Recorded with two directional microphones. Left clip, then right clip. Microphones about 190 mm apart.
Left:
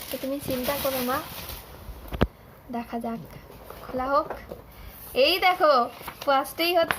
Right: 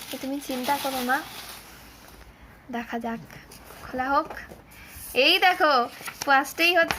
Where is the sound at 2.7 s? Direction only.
20° right (ahead or behind).